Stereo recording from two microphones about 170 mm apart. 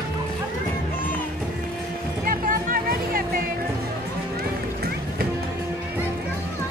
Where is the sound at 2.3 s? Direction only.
55° right (ahead or behind).